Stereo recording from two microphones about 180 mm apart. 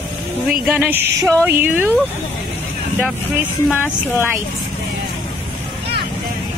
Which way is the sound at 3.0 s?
10° right (ahead or behind).